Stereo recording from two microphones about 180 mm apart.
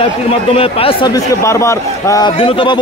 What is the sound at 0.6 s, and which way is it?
Speech, 30° left (ahead or behind).